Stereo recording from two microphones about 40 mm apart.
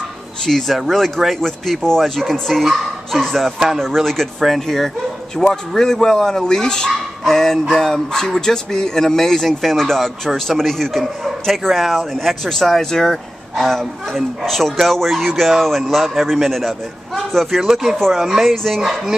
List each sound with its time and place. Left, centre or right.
0.5 s speech: centre
3.4 s speech: centre
3.8 s speech: centre
17.6 s speech: centre
17.9 s speech: centre
18.2 s speech: centre
18.5 s speech: centre
18.8 s speech: centre